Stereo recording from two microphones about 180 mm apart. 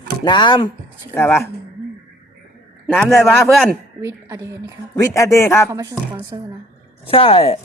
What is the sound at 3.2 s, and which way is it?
Speech, 10° left (ahead or behind).